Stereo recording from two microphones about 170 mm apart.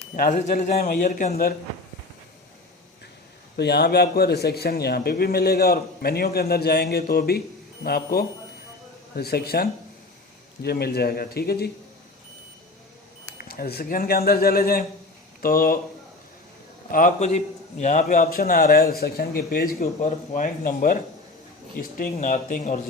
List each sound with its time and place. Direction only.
0.2 s a man's voice: 55° left (ahead or behind)
3.6 s a man's voice: 80° left
13.4 s a man's voice: 65° left (ahead or behind)
16.9 s a man's voice: 50° left (ahead or behind)
18.2 s a man's voice: 60° left (ahead or behind)
22.1 s a man's voice: 45° left (ahead or behind)